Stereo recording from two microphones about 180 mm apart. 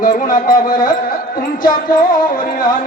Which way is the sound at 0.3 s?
50° left (ahead or behind).